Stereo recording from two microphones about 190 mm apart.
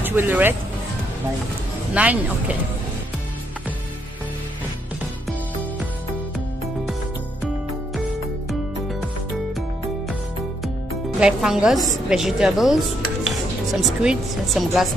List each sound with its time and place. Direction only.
0.0 s speech: 10° right (ahead or behind)
2.0 s speech: 5° right (ahead or behind)
11.1 s speech: 5° right (ahead or behind)